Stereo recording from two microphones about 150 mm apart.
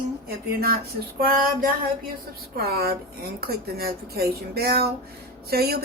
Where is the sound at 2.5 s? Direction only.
90° right.